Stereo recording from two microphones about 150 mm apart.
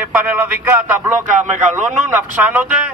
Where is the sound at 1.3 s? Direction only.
55° right (ahead or behind).